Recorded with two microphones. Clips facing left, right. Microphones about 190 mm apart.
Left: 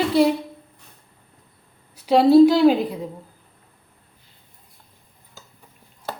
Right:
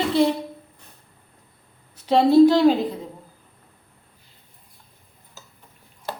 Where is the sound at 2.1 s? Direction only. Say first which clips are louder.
Left 1 dB; 10° left (ahead or behind).